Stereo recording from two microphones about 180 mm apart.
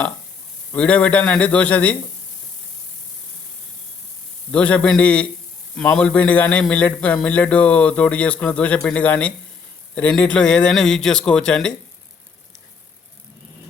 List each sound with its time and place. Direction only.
0.7 s a man's voice: 5° left (ahead or behind)
4.5 s a man's voice: 5° left (ahead or behind)